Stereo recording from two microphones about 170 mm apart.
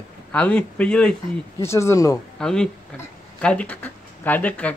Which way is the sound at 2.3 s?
5° left (ahead or behind).